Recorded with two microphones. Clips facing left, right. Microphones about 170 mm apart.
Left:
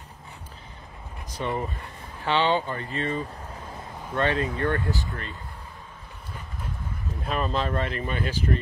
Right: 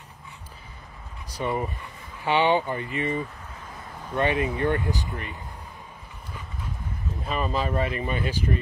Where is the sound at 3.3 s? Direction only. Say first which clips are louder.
Left 4 dB; 35° left (ahead or behind).